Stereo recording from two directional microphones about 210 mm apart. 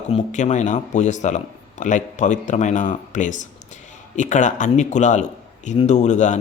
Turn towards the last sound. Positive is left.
turn(degrees=35)  # may be behind; listen again after turning